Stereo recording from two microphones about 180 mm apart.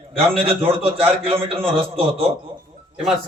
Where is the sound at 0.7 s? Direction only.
30° right (ahead or behind).